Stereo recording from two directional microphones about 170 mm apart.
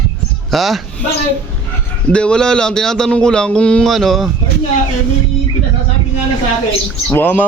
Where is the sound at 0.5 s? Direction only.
Centre (ahead or behind).